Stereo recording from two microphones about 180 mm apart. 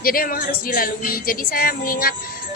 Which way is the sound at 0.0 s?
55° left (ahead or behind).